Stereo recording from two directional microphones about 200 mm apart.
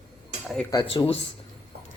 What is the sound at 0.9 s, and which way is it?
Speech, 25° left (ahead or behind).